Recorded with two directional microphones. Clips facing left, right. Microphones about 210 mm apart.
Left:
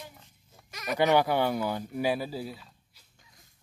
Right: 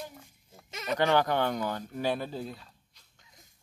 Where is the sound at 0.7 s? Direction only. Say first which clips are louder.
Right 1 dB; 25° right (ahead or behind).